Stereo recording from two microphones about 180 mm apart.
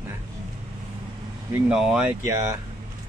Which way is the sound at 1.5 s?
5° right (ahead or behind).